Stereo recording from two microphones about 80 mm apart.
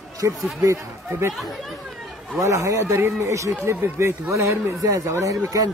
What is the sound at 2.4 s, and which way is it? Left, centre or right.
A man's voice, right.